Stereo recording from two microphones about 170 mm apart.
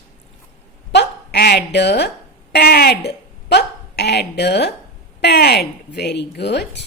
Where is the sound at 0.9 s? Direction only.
75° left (ahead or behind).